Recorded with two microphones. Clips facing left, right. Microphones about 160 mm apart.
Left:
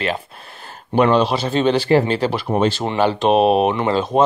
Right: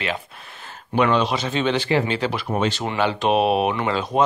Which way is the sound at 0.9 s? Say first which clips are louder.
Left 4 dB; 35° left (ahead or behind).